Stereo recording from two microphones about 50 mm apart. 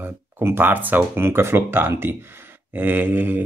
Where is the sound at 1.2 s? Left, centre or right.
Right.